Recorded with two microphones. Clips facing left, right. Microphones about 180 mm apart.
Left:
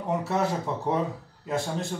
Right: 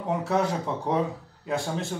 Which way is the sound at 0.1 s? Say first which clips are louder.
Right 1 dB; centre (ahead or behind).